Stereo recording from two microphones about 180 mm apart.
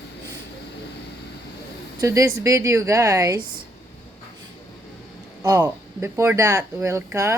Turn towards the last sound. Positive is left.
turn(degrees=-15)  # may be behind; listen again after turning